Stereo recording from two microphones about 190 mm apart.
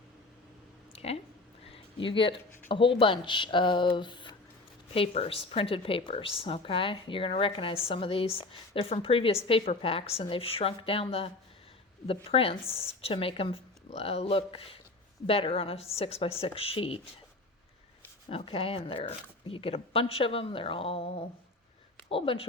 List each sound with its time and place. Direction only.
0.9 s a sound: 30° left (ahead or behind)
2.6 s a woman's voice: 25° left (ahead or behind)
18.3 s a woman's voice: 30° left (ahead or behind)